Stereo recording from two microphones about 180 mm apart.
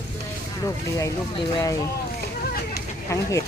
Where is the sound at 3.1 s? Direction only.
15° left (ahead or behind).